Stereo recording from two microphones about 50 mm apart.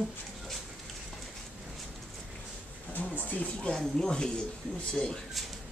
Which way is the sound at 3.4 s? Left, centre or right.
Left.